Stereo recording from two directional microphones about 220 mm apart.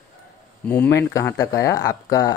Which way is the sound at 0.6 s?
10° left (ahead or behind).